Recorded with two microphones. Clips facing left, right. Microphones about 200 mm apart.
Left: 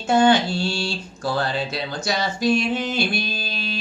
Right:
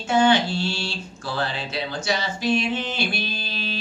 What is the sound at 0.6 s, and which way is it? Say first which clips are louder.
Mantra: left 2 dB; 40° left (ahead or behind).